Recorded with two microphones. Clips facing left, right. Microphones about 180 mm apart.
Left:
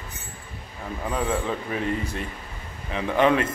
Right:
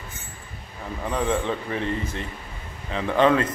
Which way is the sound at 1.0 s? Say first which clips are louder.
Right 2 dB; 5° left (ahead or behind).